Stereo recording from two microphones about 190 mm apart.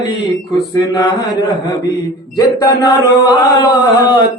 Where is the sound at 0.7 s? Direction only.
20° left (ahead or behind).